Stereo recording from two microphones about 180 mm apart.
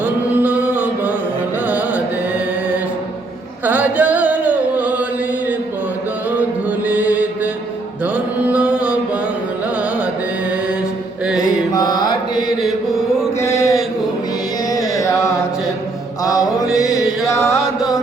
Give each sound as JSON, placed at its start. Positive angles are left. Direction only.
{"t": 0.0, "sound": "chant", "side_deg": -5}
{"t": 1.6, "sound": "music", "side_deg": -10}
{"t": 3.7, "sound": "chant", "side_deg": -10}
{"t": 6.7, "sound": "music", "side_deg": -10}
{"t": 8.0, "sound": "mantra", "side_deg": -10}
{"t": 11.3, "sound": "mantra", "side_deg": 20}
{"t": 13.4, "sound": "a sound", "side_deg": 15}
{"t": 16.2, "sound": "mantra", "side_deg": 20}
{"t": 16.7, "sound": "chant", "side_deg": 20}
{"t": 17.6, "sound": "music", "side_deg": -5}